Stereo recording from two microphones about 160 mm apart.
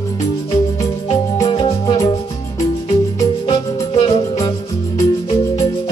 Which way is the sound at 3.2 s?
20° left (ahead or behind).